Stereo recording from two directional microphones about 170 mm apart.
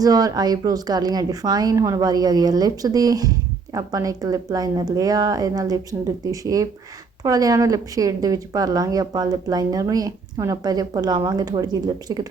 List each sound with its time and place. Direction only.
0.0 s speech: 20° right (ahead or behind)